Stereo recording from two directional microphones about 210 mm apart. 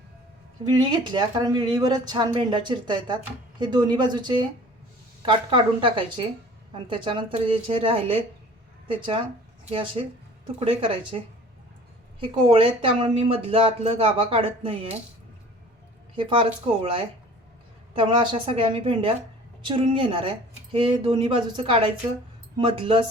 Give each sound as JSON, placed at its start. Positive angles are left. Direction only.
{"t": 0.6, "sound": "speech", "side_deg": -20}
{"t": 12.5, "sound": "speech", "side_deg": -25}
{"t": 16.1, "sound": "speech", "side_deg": -25}